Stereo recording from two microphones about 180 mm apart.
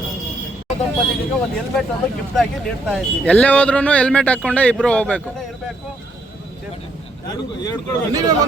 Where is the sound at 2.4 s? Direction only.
Centre (ahead or behind).